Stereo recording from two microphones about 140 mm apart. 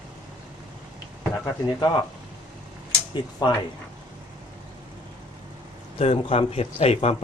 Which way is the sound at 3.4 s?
30° left (ahead or behind).